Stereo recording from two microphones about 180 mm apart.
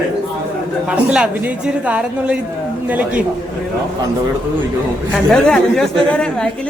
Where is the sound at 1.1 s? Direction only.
5° right (ahead or behind).